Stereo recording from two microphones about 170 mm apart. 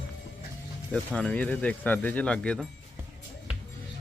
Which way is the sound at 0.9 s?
5° left (ahead or behind).